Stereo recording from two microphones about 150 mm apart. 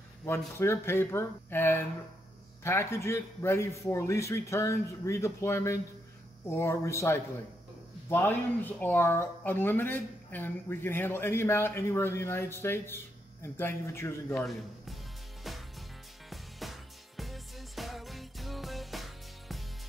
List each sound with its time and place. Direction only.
0.2 s a man's voice: 15° left (ahead or behind)
14.4 s speech: centre (ahead or behind)
15.5 s music: centre (ahead or behind)